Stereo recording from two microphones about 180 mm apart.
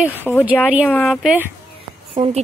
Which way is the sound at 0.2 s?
10° left (ahead or behind).